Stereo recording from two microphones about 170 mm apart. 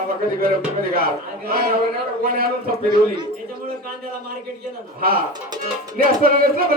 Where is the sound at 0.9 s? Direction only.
60° right (ahead or behind).